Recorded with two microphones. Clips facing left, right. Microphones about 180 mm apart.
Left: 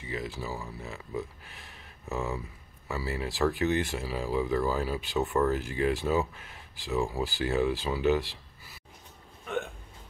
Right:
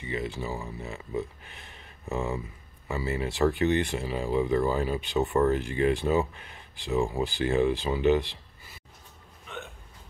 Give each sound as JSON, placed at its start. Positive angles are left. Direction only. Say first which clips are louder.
{"t": 0.0, "sound": "speech", "louder": "right 3 dB", "side_deg": 0}
{"t": 9.5, "sound": "hiccup", "louder": "left 8 dB", "side_deg": 50}